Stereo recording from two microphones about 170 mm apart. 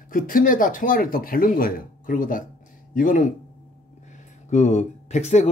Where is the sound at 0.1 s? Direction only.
55° left (ahead or behind).